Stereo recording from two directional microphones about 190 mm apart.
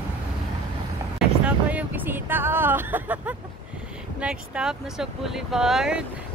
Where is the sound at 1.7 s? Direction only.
10° right (ahead or behind).